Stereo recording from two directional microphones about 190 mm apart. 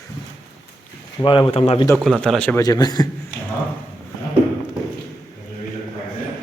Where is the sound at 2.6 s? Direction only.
20° left (ahead or behind).